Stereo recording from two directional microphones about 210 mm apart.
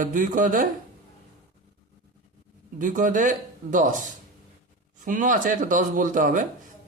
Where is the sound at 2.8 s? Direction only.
40° right (ahead or behind).